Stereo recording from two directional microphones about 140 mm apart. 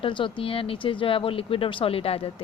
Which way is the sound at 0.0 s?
35° left (ahead or behind).